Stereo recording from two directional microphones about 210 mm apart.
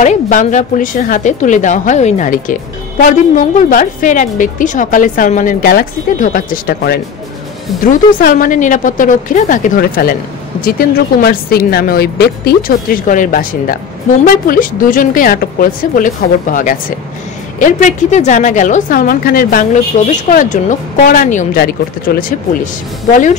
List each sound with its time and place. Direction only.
0.0 s a woman's voice: 35° left (ahead or behind)